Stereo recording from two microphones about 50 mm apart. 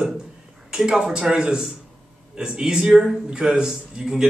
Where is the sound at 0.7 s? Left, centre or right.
Centre.